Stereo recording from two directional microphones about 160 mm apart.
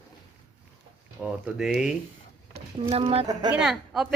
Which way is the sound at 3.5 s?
5° right (ahead or behind).